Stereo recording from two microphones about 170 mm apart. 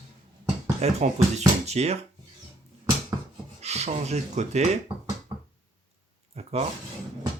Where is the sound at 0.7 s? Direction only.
40° right (ahead or behind).